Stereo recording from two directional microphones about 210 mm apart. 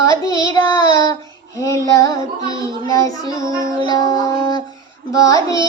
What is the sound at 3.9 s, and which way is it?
Music, 15° left (ahead or behind).